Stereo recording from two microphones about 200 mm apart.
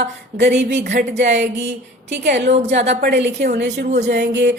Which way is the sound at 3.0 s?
60° right (ahead or behind).